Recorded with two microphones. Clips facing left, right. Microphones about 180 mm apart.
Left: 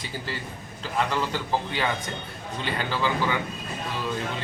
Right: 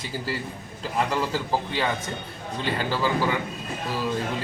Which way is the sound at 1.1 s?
5° right (ahead or behind).